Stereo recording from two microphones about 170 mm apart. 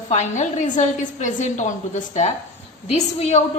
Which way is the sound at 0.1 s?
45° left (ahead or behind).